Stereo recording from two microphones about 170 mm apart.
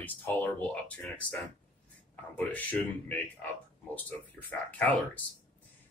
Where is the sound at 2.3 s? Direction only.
10° left (ahead or behind).